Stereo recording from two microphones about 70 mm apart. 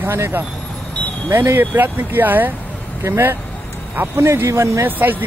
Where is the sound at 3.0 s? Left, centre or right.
Right.